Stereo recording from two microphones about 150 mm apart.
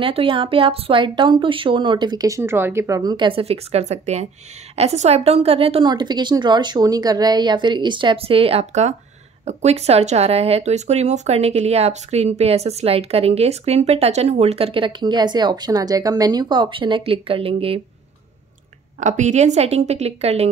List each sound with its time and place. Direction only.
0.0 s speech: 35° right (ahead or behind)
18.9 s speech: 55° right (ahead or behind)